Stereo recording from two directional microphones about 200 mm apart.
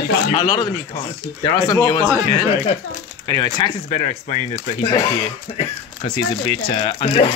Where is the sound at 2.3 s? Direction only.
30° left (ahead or behind).